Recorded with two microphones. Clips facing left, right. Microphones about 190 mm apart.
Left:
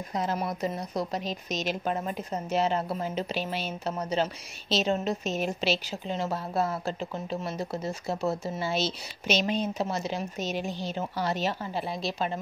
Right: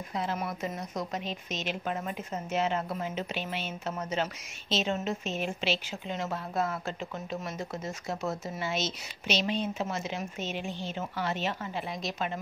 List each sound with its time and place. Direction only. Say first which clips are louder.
0.1 s a woman's voice: left 3 dB; 40° left (ahead or behind)